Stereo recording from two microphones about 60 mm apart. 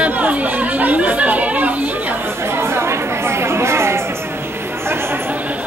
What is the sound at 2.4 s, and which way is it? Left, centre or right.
Chatter, right.